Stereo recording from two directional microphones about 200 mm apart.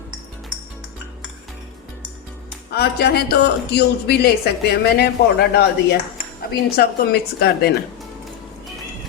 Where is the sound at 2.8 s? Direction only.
55° left (ahead or behind).